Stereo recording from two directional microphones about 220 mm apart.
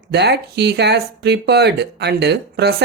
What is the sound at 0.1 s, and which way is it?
Speech, 50° right (ahead or behind).